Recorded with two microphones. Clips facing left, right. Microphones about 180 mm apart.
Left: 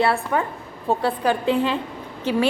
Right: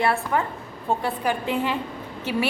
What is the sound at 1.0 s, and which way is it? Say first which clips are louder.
Speech: left 4 dB; 15° right (ahead or behind).